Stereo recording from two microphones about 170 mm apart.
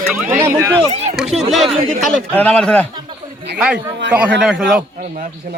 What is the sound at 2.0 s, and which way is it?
Speech, 5° left (ahead or behind).